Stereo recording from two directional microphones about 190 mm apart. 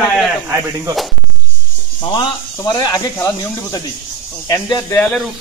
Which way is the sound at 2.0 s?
25° left (ahead or behind).